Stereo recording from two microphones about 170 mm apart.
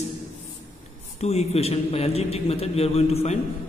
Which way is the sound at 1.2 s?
40° left (ahead or behind).